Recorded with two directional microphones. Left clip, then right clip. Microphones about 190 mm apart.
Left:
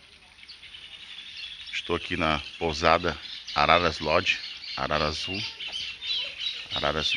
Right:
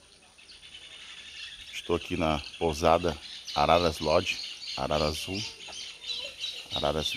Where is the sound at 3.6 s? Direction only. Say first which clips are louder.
Left 2 dB; 5° right (ahead or behind).